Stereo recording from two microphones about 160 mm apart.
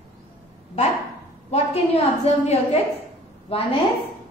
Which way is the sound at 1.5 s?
40° left (ahead or behind).